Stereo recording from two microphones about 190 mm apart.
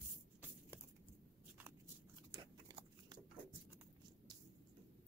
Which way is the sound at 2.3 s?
20° right (ahead or behind).